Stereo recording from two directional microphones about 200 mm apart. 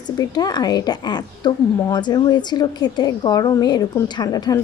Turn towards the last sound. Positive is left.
turn(degrees=20)  # may be behind; listen again after turning